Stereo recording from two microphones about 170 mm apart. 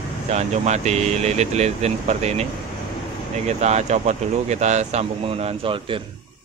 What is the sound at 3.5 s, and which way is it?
Speech, 40° right (ahead or behind).